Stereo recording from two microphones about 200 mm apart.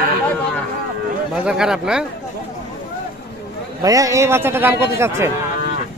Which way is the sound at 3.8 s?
15° right (ahead or behind).